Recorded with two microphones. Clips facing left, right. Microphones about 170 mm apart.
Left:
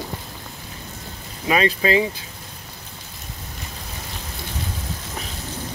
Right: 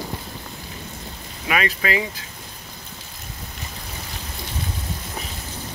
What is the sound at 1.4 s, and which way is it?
Speech, 25° left (ahead or behind).